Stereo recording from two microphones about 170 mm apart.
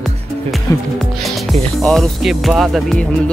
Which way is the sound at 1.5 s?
Centre (ahead or behind).